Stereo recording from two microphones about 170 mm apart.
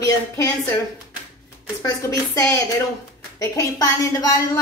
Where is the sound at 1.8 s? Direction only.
20° left (ahead or behind).